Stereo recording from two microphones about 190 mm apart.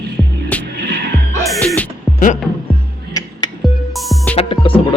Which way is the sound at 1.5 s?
5° left (ahead or behind).